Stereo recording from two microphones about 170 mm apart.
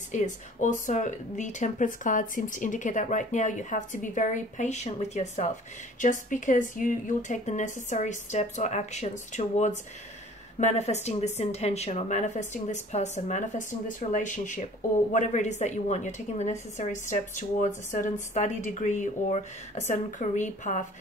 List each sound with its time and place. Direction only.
0.1 s speech: 45° left (ahead or behind)